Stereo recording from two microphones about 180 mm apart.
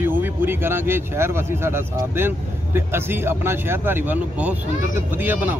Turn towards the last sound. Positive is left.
turn(degrees=-10)  # may be behind; listen again after turning